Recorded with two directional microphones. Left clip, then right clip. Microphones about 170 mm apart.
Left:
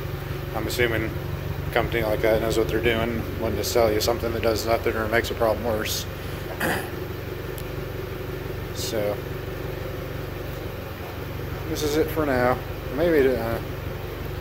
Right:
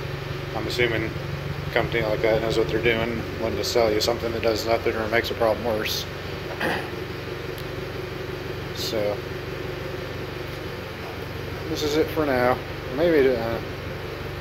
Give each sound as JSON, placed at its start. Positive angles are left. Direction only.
{"t": 0.7, "sound": "speech", "side_deg": 15}
{"t": 11.7, "sound": "speech", "side_deg": 10}
{"t": 12.2, "sound": "speech", "side_deg": 0}